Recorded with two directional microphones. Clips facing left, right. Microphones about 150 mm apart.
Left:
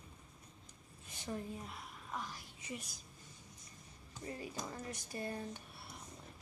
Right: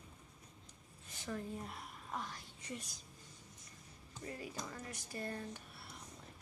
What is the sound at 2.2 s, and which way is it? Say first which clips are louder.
Speech: even; 10° left (ahead or behind).